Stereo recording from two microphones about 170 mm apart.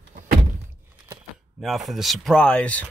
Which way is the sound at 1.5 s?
Centre (ahead or behind).